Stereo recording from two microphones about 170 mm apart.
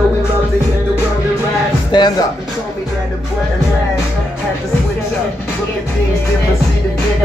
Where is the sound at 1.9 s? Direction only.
25° left (ahead or behind).